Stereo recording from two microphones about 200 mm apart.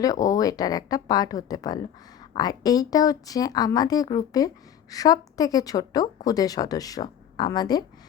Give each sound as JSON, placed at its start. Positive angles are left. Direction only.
{"t": 0.0, "sound": "speech", "side_deg": 20}